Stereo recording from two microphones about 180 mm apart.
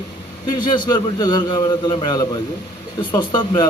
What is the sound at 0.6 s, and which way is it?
A man's voice, 25° left (ahead or behind).